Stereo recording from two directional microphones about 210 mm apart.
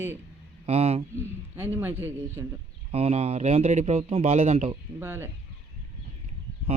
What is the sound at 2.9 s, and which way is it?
A man's voice, 30° right (ahead or behind).